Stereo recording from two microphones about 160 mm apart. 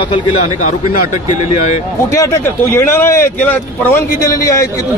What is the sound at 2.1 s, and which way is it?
A man's voice, 15° left (ahead or behind).